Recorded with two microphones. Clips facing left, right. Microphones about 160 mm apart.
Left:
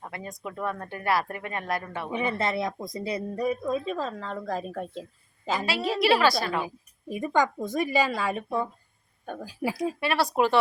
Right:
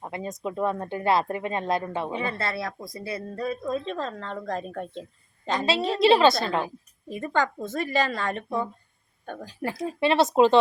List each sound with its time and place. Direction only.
0.0 s speech: 20° right (ahead or behind)
2.1 s speech: 20° left (ahead or behind)
6.0 s speech: 25° right (ahead or behind)
7.1 s speech: 10° left (ahead or behind)
10.0 s speech: 20° right (ahead or behind)